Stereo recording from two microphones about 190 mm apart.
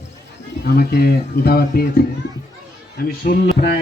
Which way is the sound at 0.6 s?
55° left (ahead or behind).